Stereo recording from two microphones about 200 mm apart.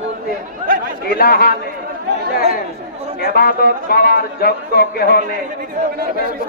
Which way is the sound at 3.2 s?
50° left (ahead or behind).